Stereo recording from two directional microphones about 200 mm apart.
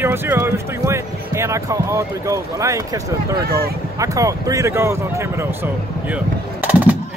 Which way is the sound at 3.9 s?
15° right (ahead or behind).